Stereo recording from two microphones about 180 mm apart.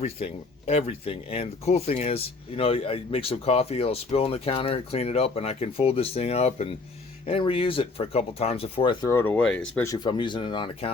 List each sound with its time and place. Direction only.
0.0 s speech: 35° left (ahead or behind); by 9.8 s 5° left (ahead or behind)
9.8 s speech: 20° left (ahead or behind)